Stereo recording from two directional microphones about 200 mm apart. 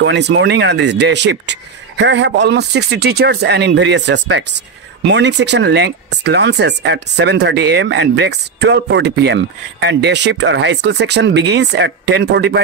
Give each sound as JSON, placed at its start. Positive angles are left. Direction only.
{"t": 0.0, "sound": "speech", "side_deg": -60}